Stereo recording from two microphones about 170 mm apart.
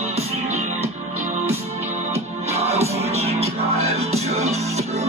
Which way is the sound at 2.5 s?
40° right (ahead or behind).